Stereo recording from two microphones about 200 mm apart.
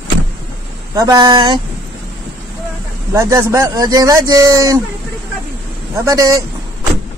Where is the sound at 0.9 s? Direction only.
20° right (ahead or behind).